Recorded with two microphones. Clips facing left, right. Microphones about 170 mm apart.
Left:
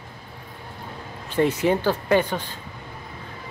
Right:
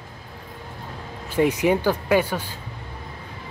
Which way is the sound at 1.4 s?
10° right (ahead or behind).